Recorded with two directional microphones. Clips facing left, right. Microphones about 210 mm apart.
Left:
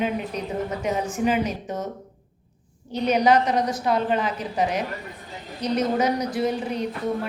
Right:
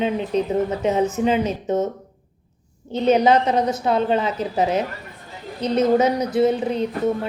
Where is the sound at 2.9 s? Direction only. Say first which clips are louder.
Right 3 dB; 25° right (ahead or behind).